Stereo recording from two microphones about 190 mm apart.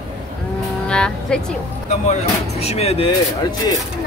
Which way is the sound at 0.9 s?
5° left (ahead or behind).